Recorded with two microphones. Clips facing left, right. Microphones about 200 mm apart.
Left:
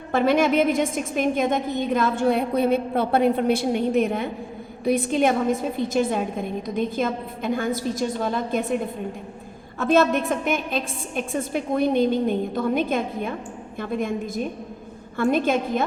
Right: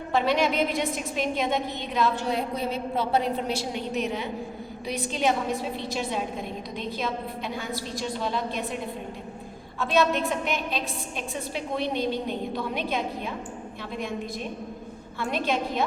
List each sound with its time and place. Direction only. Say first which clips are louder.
0.1 s a woman's voice: left 5 dB; 50° left (ahead or behind)
9.8 s a woman's voice: left 5 dB; 45° left (ahead or behind)